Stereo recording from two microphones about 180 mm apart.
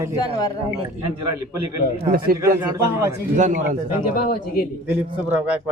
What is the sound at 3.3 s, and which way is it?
Speech, 45° right (ahead or behind).